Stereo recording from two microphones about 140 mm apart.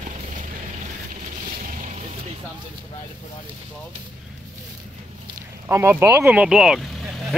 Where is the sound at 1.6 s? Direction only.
70° right (ahead or behind).